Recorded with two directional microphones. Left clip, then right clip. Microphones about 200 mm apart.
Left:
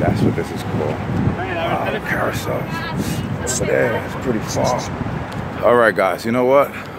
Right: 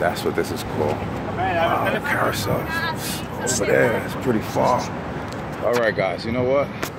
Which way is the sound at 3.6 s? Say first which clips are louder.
Left 1 dB; 5° right (ahead or behind).